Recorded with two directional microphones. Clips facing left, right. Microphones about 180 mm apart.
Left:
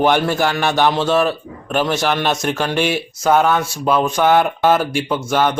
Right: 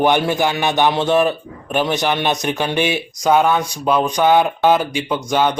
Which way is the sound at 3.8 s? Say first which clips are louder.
Left 1 dB; 5° left (ahead or behind).